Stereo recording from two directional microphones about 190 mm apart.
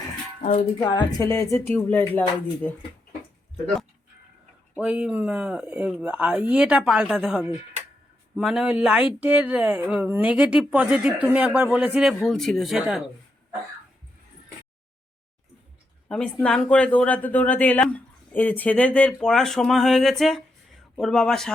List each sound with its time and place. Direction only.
0.8 s speech: 20° left (ahead or behind)
4.8 s speech: 5° right (ahead or behind)
16.0 s speech: 5° left (ahead or behind)